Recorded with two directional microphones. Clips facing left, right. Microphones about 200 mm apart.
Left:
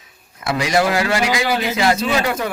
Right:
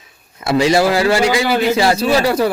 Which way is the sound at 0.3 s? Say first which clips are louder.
Right 5 dB; 30° right (ahead or behind).